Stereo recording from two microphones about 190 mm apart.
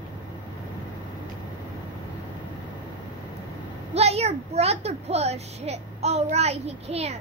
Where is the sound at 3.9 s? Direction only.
35° right (ahead or behind).